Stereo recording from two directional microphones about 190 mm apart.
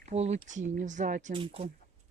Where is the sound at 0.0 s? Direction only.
35° right (ahead or behind).